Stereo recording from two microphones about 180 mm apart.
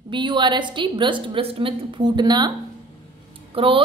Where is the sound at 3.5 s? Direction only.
30° right (ahead or behind).